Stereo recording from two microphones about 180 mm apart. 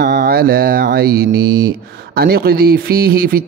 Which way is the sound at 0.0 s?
65° right (ahead or behind).